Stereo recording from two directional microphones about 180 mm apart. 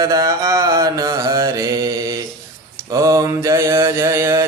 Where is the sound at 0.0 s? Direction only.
20° right (ahead or behind).